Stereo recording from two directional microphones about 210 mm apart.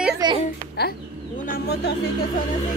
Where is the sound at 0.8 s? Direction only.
45° left (ahead or behind).